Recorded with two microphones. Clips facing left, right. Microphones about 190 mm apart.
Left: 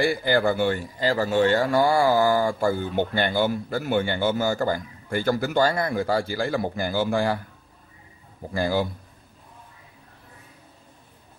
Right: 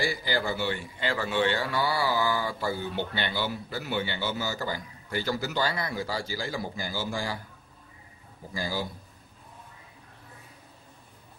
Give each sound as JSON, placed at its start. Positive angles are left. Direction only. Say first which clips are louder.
{"t": 0.0, "sound": "a man's voice", "louder": "left 8 dB", "side_deg": 55}
{"t": 8.5, "sound": "a man's voice", "louder": "left 9 dB", "side_deg": 60}